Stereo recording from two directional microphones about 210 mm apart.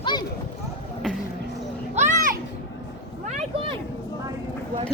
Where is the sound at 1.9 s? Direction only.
35° right (ahead or behind).